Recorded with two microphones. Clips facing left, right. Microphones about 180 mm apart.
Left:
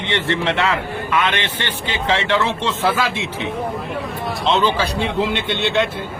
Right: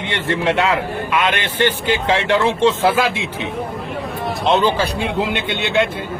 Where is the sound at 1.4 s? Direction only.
45° right (ahead or behind).